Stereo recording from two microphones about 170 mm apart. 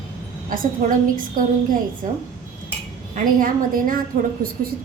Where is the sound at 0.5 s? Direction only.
55° right (ahead or behind).